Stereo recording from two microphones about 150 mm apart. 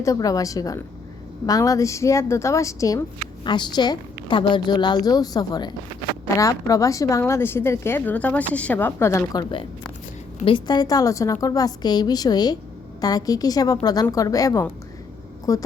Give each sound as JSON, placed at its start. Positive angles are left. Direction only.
{"t": 0.0, "sound": "a woman's voice", "side_deg": 25}